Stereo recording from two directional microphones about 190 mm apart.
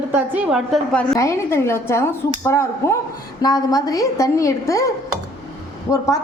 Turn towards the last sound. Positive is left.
turn(degrees=15)  # may be behind; listen again after turning